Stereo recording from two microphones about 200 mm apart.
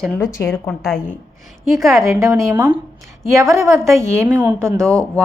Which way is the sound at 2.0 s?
15° right (ahead or behind).